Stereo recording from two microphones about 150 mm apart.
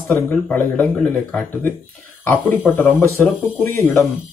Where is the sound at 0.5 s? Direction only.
5° left (ahead or behind).